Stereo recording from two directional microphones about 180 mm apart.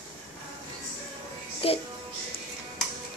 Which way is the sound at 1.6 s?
30° left (ahead or behind).